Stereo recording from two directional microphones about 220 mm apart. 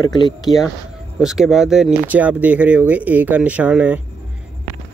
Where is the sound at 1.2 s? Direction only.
Centre (ahead or behind).